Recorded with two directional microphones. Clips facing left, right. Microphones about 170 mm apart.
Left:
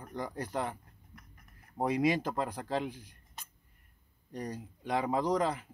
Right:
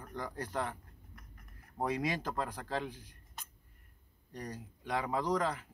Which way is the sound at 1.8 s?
15° left (ahead or behind).